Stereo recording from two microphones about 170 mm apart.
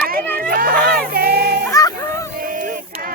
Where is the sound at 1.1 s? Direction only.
65° right (ahead or behind).